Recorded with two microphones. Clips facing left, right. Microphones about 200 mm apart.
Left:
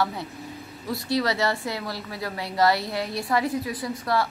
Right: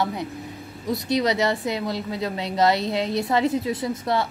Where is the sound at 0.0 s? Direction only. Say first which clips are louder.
Right 2 dB; 20° right (ahead or behind).